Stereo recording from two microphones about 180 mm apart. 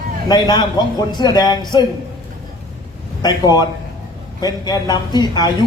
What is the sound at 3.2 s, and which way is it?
Speech, 20° left (ahead or behind).